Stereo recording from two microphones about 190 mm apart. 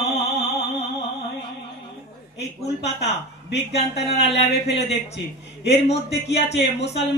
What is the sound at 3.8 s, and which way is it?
Speech, 35° left (ahead or behind).